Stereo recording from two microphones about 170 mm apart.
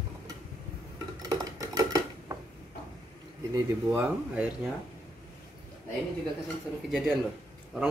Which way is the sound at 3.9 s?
10° right (ahead or behind).